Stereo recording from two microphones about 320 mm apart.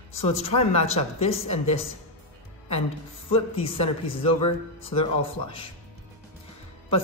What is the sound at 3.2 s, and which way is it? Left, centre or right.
Speech, centre.